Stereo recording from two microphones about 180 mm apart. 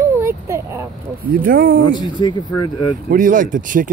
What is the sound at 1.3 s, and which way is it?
Speech, 50° right (ahead or behind).